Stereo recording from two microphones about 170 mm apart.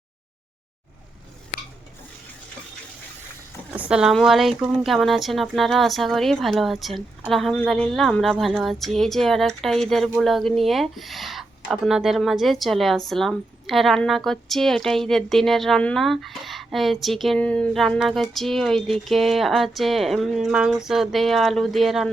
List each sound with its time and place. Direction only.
3.7 s speech: 5° right (ahead or behind)